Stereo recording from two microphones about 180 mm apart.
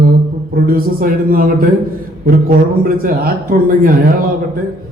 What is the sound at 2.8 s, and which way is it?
Mantra, 55° right (ahead or behind).